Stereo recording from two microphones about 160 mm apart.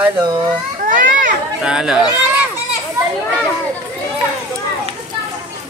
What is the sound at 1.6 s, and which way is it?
Speech, 5° right (ahead or behind).